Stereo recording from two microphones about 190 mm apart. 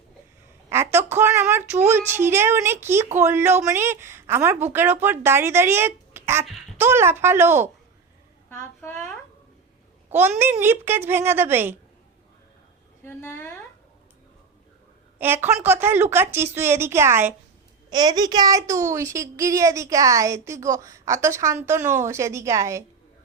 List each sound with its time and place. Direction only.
0.7 s a sound: 15° right (ahead or behind)
1.9 s a woman's voice: 10° right (ahead or behind)
8.4 s a woman's voice: 15° left (ahead or behind)
10.1 s a woman's voice: 10° right (ahead or behind)
13.1 s a woman's voice: 10° left (ahead or behind)
15.2 s a woman's voice: 10° right (ahead or behind)